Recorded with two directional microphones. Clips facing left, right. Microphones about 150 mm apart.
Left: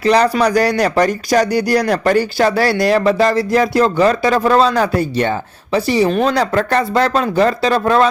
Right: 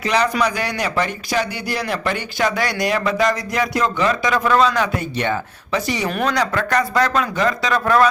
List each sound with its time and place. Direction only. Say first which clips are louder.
0.0 s speech: left 6 dB; 35° left (ahead or behind)